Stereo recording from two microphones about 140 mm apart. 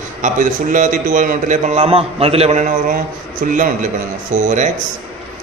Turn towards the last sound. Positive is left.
turn(degrees=-60)  # may be behind; listen again after turning